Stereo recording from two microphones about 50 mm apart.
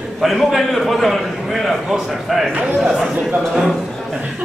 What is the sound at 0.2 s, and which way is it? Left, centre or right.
A man's voice, centre.